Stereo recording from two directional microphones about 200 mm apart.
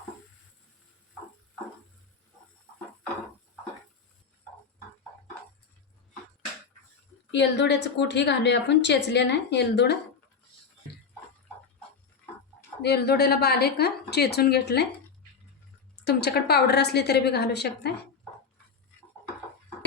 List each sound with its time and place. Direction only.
7.3 s a woman's voice: 60° left (ahead or behind)
12.8 s a woman's voice: 55° left (ahead or behind)
16.0 s a woman's voice: 55° left (ahead or behind)